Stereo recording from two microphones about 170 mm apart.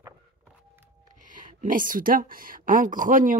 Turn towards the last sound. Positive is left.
turn(degrees=-50)  # may be behind; listen again after turning